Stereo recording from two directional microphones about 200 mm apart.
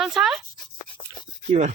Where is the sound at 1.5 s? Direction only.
35° right (ahead or behind).